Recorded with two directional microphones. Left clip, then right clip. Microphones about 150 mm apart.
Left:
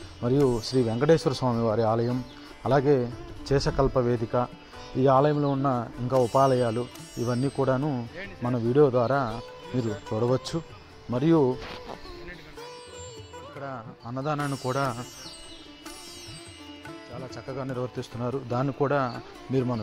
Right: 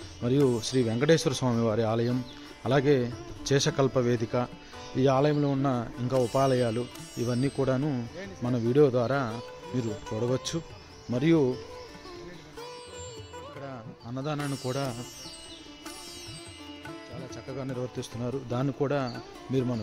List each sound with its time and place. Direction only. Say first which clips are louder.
0.2 s speech: left 2 dB; centre (ahead or behind); by 4.2 s 20° right (ahead or behind)
4.9 s speech: left 3 dB; 10° right (ahead or behind)
6.0 s speech: left 4 dB; centre (ahead or behind)
8.2 s speech: left 2 dB; 15° right (ahead or behind)
13.6 s music: left 4 dB; 10° right (ahead or behind)
14.4 s speech: left 4 dB; centre (ahead or behind)
17.1 s speech: left 5 dB; centre (ahead or behind)
19.1 s speech: left 2 dB; 5° right (ahead or behind)